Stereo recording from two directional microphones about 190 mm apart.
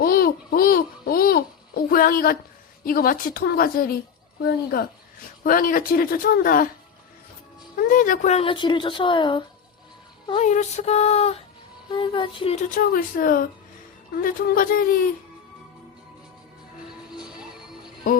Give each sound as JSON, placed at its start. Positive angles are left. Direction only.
{"t": 0.0, "sound": "babbling", "side_deg": 50}
{"t": 2.8, "sound": "speech", "side_deg": 50}
{"t": 5.4, "sound": "speech", "side_deg": 45}
{"t": 7.8, "sound": "a woman's voice", "side_deg": 45}
{"t": 10.2, "sound": "a woman's voice", "side_deg": 35}
{"t": 12.7, "sound": "speech", "side_deg": 50}
{"t": 17.2, "sound": "music", "side_deg": -5}